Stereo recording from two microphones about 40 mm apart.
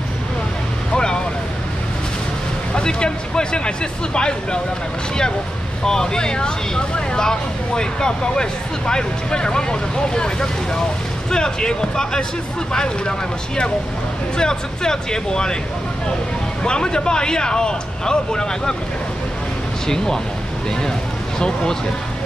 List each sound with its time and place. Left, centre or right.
0.9 s vehicle: left
2.7 s a sound: left
5.9 s speech: centre
14.3 s speech: centre
16.6 s speech: left
21.4 s speech: centre